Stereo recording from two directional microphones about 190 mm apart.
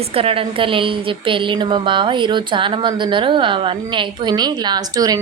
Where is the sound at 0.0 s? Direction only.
30° right (ahead or behind).